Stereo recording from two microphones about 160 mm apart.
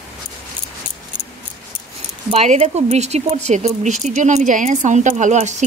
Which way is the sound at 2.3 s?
40° right (ahead or behind).